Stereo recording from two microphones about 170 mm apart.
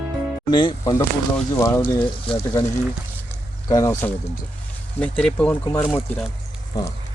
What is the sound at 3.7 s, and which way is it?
Speech, 15° left (ahead or behind).